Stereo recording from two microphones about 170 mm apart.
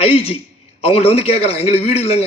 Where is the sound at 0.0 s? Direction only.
35° left (ahead or behind).